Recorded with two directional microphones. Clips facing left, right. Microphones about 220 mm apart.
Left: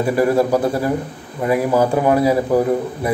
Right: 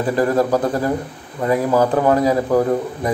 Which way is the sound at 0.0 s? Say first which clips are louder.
Left 1 dB; 10° left (ahead or behind).